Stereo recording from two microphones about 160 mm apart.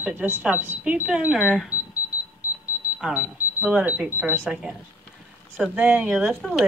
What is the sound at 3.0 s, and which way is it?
Speech, 5° right (ahead or behind).